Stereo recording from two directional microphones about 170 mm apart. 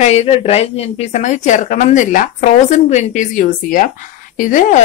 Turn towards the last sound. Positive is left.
turn(degrees=50)  # may be behind; listen again after turning